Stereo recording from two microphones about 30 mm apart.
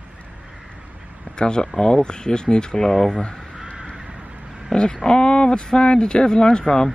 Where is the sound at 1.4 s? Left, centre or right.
Left.